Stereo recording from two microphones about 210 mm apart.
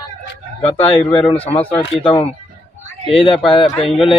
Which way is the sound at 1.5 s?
20° left (ahead or behind).